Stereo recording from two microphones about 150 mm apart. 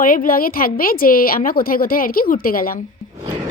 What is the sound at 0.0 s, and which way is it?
A woman's voice, 65° left (ahead or behind).